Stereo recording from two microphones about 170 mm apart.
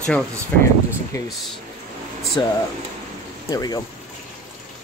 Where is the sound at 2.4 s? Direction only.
25° left (ahead or behind).